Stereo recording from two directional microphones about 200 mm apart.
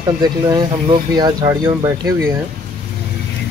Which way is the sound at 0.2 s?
20° right (ahead or behind).